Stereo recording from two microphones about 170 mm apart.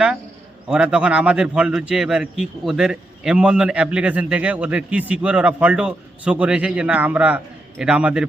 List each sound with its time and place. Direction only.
0.7 s a man's voice: 5° right (ahead or behind)